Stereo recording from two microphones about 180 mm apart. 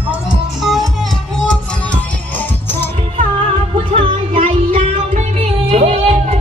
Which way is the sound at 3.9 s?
30° right (ahead or behind).